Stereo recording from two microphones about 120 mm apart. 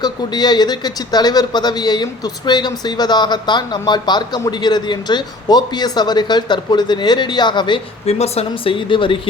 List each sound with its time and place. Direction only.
0.0 s speech: 35° left (ahead or behind)
8.0 s speech: 60° left (ahead or behind)